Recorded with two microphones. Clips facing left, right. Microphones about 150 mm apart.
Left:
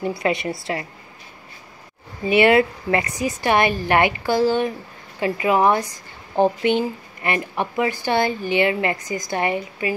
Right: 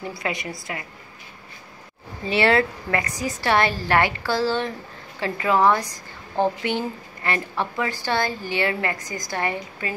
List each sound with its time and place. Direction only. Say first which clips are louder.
0.2 s a woman's voice: left 7 dB; 25° left (ahead or behind)
2.2 s a woman's voice: left 4 dB; 15° left (ahead or behind)